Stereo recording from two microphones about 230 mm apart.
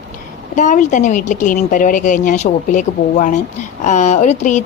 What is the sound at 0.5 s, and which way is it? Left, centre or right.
Speech, left.